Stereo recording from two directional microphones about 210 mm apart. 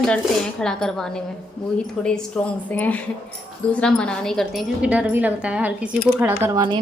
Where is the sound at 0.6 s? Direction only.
5° left (ahead or behind).